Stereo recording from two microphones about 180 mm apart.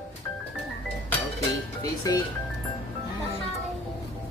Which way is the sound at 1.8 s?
20° left (ahead or behind).